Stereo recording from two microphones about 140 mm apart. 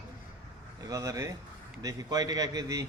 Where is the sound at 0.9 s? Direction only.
25° right (ahead or behind).